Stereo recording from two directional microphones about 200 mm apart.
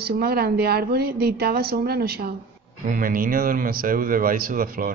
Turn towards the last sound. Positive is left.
turn(degrees=-45)  # may be behind; listen again after turning